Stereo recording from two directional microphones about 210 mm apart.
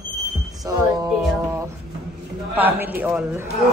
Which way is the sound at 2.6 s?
10° right (ahead or behind).